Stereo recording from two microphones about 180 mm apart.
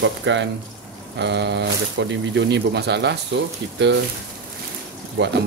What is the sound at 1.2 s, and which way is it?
Speech, 75° right (ahead or behind).